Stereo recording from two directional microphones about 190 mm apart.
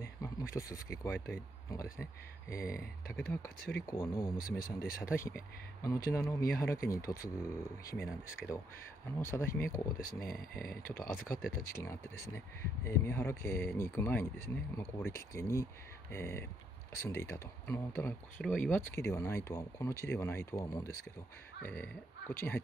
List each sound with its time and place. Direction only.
0.2 s speech: 15° left (ahead or behind)
3.8 s speech: 15° left (ahead or behind)
4.4 s speech: 50° left (ahead or behind)
5.1 s speech: 15° left (ahead or behind)
10.2 s speech: 50° left (ahead or behind)
11.7 s speech: 15° left (ahead or behind)